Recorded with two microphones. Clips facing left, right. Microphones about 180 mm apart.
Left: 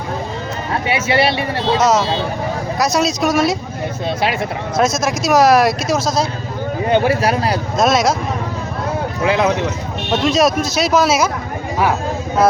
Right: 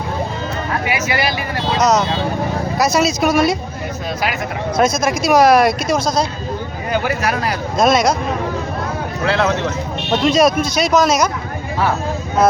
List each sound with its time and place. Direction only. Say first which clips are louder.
0.7 s speech: left 4 dB; 30° left (ahead or behind)
1.8 s speech: right 2 dB; 5° left (ahead or behind)
4.8 s speech: right 1 dB; centre (ahead or behind)
6.9 s speech: left 4 dB; 30° left (ahead or behind)
7.8 s speech: right 1 dB; centre (ahead or behind)
9.2 s speech: left 1 dB; 15° left (ahead or behind)
10.1 s speech: right 1 dB; centre (ahead or behind)